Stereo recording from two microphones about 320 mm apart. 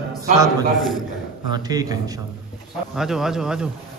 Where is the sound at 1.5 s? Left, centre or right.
Centre.